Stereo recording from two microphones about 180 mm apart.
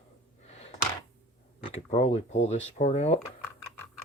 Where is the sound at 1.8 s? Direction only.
40° left (ahead or behind).